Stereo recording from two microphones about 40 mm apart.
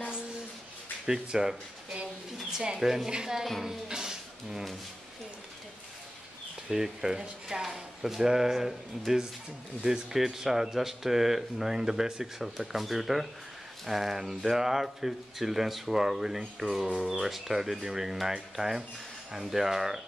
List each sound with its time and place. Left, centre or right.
1.0 s speech: centre
6.7 s speech: centre
12.4 s speech: centre